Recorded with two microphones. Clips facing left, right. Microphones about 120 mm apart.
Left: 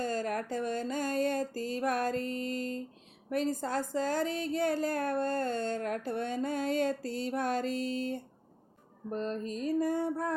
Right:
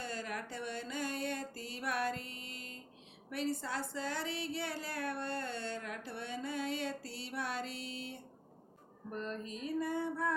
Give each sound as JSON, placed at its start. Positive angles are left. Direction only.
{"t": 0.0, "sound": "a sound", "side_deg": 45}
{"t": 3.2, "sound": "a woman's voice", "side_deg": 45}
{"t": 9.0, "sound": "mantra", "side_deg": 35}